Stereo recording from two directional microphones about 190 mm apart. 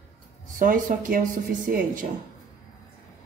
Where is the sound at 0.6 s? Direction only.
45° right (ahead or behind).